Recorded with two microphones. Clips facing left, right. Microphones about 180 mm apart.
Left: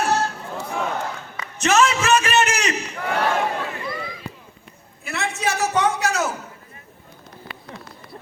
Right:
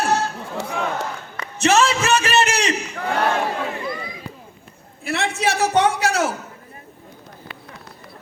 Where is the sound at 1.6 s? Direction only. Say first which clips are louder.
Right 1 dB; 30° right (ahead or behind).